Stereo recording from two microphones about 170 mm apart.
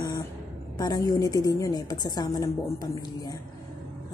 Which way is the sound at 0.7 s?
20° left (ahead or behind).